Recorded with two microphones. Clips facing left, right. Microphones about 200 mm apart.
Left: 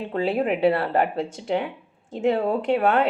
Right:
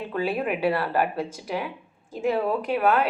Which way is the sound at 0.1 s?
25° left (ahead or behind).